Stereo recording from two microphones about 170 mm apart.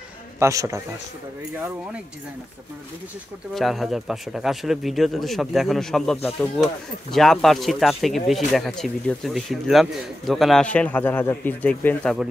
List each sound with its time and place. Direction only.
0.4 s speech: 20° right (ahead or behind)
3.5 s speech: centre (ahead or behind)